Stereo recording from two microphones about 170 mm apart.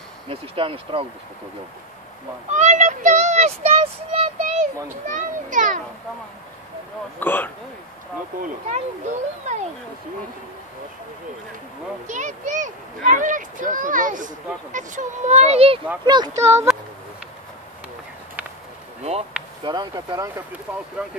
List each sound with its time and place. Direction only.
0.3 s speech: 30° right (ahead or behind)
2.5 s a child's voice: 45° right (ahead or behind)
7.2 s speech: 10° left (ahead or behind)
8.4 s a child's voice: 45° right (ahead or behind)
12.1 s a child's voice: 45° right (ahead or behind)
16.1 s speech: 20° right (ahead or behind)
19.6 s speech: 25° right (ahead or behind)
21.0 s speech: 5° right (ahead or behind)